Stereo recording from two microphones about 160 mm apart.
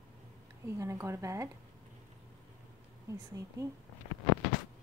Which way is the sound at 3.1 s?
20° right (ahead or behind).